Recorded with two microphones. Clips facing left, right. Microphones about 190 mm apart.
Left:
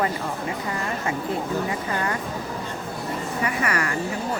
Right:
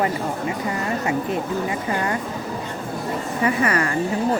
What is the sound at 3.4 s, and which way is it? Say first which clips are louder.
Speech: right 6 dB; 30° right (ahead or behind).